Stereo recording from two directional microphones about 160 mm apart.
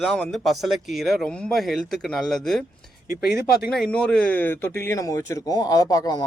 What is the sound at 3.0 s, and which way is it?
Speech, 70° left (ahead or behind).